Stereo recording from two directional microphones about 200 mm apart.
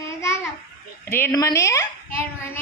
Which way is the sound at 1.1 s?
15° left (ahead or behind).